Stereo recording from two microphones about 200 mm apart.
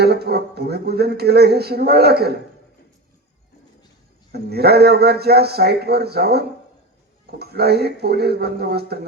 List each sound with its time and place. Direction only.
0.0 s speech: 55° right (ahead or behind)
4.3 s speech: 55° right (ahead or behind)